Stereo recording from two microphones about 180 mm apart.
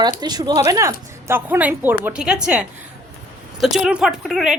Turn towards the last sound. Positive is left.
turn(degrees=0)  # may be behind; listen again after turning